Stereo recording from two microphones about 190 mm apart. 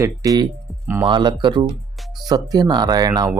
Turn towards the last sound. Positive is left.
turn(degrees=-20)  # may be behind; listen again after turning